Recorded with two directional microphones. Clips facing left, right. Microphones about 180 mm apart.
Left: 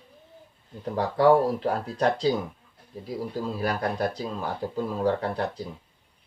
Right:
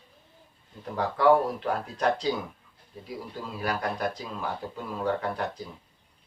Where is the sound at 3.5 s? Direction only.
35° left (ahead or behind).